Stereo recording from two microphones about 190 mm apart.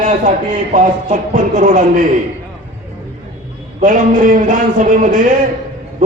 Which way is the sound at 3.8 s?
45° right (ahead or behind).